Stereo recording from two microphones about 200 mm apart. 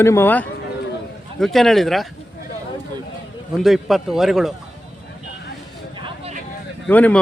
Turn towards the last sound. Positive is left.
turn(degrees=5)  # may be behind; listen again after turning